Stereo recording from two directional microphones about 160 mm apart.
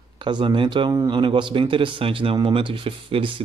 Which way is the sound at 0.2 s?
30° right (ahead or behind).